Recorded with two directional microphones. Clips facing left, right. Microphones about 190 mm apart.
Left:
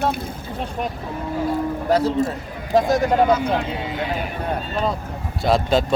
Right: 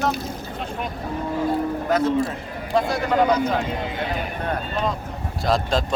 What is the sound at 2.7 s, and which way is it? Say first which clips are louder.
Speech: left 4 dB; 40° left (ahead or behind).